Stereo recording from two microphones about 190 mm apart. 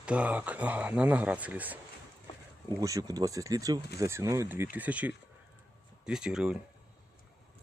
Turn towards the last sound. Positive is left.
turn(degrees=-5)  # may be behind; listen again after turning